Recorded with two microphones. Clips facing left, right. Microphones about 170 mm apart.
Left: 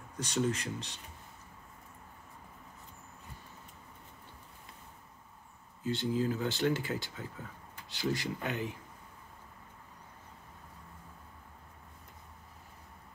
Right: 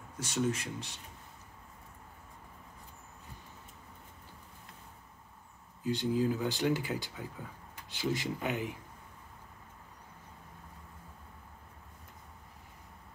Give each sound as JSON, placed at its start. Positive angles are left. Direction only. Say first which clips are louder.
{"t": 0.2, "sound": "speech", "louder": "even", "side_deg": -10}
{"t": 5.9, "sound": "speech", "louder": "right 1 dB", "side_deg": -15}